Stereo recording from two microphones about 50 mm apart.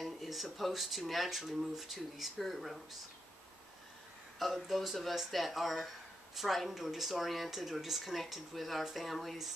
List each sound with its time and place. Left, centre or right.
0.0 s speech: centre
4.4 s speech: centre